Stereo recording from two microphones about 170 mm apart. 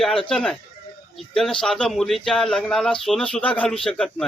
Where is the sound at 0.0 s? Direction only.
5° left (ahead or behind).